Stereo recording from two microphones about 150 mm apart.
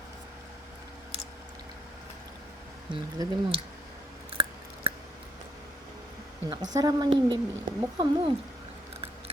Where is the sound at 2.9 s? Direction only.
30° right (ahead or behind).